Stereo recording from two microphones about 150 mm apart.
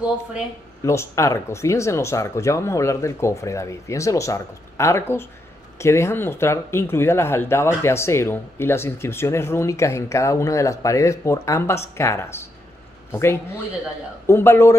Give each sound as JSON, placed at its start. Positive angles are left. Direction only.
{"t": 0.8, "sound": "speech", "side_deg": 20}